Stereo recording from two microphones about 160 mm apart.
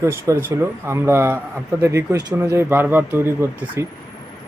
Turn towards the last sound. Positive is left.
turn(degrees=-15)  # may be behind; listen again after turning